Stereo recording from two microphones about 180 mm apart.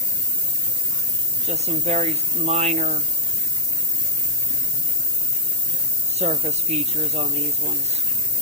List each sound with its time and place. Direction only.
1.5 s speech: 35° right (ahead or behind)
6.1 s speech: 35° right (ahead or behind)